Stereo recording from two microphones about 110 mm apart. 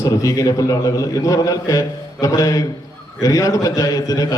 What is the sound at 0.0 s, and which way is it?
A man's voice, 30° left (ahead or behind).